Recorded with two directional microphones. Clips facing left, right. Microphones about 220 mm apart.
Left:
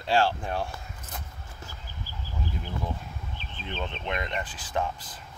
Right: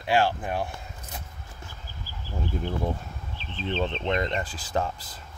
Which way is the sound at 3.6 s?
25° right (ahead or behind).